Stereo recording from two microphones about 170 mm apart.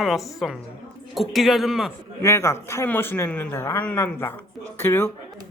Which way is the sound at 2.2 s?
15° left (ahead or behind).